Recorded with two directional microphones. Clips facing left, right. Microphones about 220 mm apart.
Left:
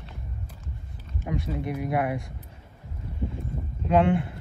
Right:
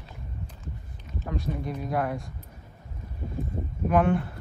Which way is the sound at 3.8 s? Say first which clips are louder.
Left 1 dB; 25° left (ahead or behind).